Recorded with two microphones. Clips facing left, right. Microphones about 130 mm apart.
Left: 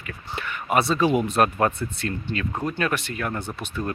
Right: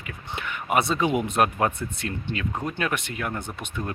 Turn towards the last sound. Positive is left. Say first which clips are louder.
# left 3 dB
turn(degrees=-15)  # may be behind; listen again after turning